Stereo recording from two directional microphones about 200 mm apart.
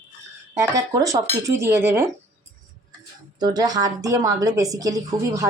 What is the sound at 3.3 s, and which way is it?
A woman's voice, 20° right (ahead or behind).